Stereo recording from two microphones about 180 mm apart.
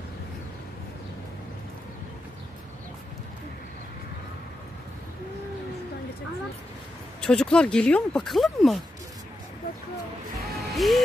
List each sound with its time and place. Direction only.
7.2 s speech: 5° left (ahead or behind)
10.4 s music: centre (ahead or behind)